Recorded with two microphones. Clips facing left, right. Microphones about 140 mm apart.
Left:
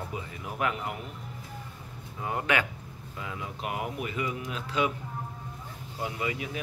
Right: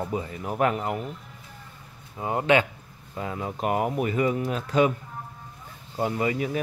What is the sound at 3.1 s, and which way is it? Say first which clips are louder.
Speech: right 7 dB; 40° right (ahead or behind).